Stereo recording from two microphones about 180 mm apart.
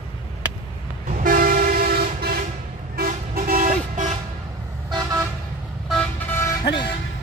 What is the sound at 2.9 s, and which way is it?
Vehicle, 55° right (ahead or behind).